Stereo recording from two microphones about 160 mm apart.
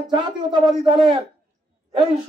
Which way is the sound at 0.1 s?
30° right (ahead or behind).